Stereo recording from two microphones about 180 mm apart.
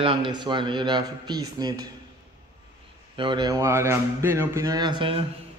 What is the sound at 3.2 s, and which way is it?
Speech, 25° right (ahead or behind).